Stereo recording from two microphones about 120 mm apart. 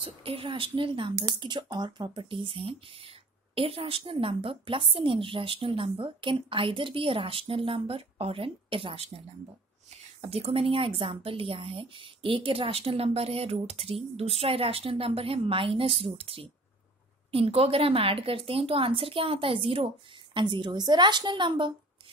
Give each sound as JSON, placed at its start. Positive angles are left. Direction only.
{"t": 0.0, "sound": "a woman's voice", "side_deg": -50}